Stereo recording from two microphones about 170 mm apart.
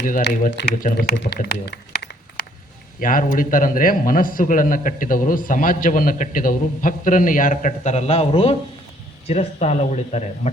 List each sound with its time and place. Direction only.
0.5 s speech: 60° left (ahead or behind)
3.0 s a man's voice: 55° left (ahead or behind)